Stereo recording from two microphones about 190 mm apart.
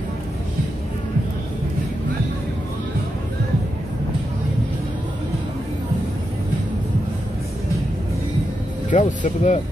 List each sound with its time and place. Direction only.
8.9 s speech: 40° left (ahead or behind)